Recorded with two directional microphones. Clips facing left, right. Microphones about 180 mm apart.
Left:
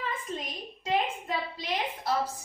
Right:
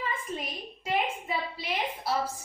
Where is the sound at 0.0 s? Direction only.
10° right (ahead or behind).